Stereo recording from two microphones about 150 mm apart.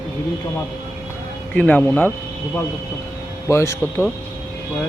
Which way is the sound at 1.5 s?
10° left (ahead or behind).